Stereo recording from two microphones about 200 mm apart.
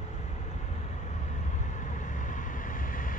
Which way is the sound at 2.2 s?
40° left (ahead or behind).